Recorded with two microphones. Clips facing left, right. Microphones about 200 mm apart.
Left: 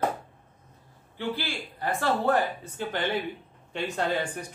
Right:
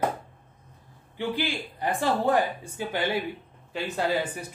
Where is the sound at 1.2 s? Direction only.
15° right (ahead or behind).